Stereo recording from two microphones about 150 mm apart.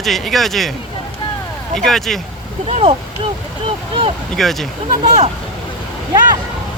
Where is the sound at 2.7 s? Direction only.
40° right (ahead or behind).